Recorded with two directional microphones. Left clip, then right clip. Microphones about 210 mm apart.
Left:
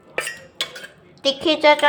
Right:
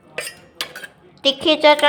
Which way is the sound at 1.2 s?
10° right (ahead or behind).